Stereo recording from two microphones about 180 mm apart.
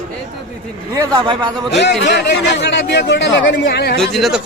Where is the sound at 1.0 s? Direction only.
20° right (ahead or behind).